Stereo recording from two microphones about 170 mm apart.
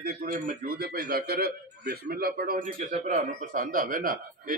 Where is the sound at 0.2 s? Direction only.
55° right (ahead or behind).